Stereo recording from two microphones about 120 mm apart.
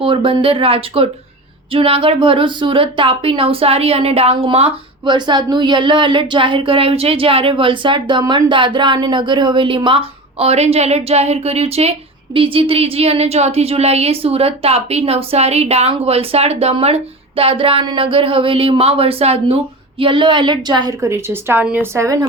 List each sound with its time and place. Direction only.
0.0 s speech: 45° right (ahead or behind)
5.0 s speech: 40° right (ahead or behind); by 19.5 s 55° right (ahead or behind)
20.0 s a woman's voice: 45° right (ahead or behind); by 21.8 s 15° right (ahead or behind)
21.9 s speech: 30° right (ahead or behind)